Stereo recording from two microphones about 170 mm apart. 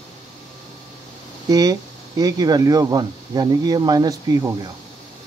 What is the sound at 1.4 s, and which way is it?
Speech, 20° right (ahead or behind).